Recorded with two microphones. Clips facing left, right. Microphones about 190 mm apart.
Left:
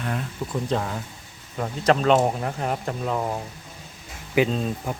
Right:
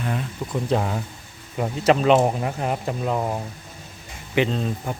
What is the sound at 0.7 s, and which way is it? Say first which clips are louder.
Speech: right 3 dB; 15° right (ahead or behind).